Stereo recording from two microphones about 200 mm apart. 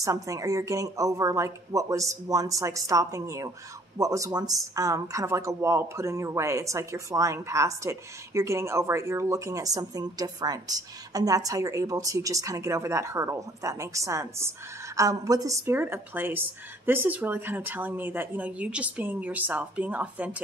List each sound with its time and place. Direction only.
0.0 s speech: 15° right (ahead or behind)